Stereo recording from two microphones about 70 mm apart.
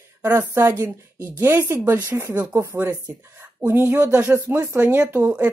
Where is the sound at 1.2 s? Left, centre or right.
Right.